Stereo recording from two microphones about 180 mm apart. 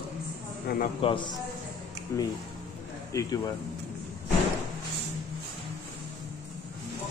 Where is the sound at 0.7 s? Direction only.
60° left (ahead or behind).